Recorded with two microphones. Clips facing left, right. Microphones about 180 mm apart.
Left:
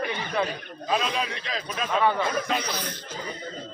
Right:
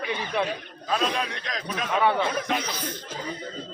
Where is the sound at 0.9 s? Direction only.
5° left (ahead or behind).